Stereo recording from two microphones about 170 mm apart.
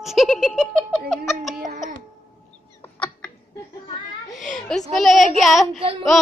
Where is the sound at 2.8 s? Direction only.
10° left (ahead or behind).